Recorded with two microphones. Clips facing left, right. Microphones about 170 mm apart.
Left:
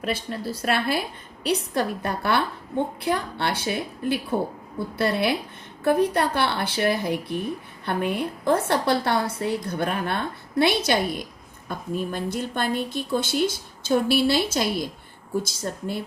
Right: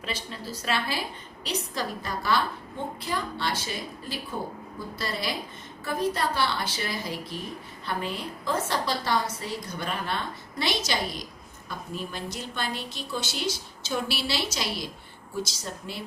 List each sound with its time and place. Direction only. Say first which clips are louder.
0.0 s a woman's voice: left 7 dB; 55° left (ahead or behind)